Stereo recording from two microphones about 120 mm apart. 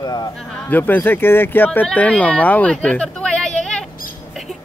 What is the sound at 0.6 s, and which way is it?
Speech, 15° left (ahead or behind).